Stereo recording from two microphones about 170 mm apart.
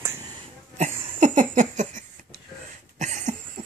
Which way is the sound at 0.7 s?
50° right (ahead or behind).